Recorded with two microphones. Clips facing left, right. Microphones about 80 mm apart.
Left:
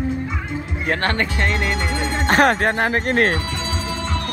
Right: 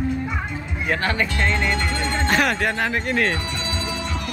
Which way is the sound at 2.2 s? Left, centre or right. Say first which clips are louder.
Left 6 dB; left.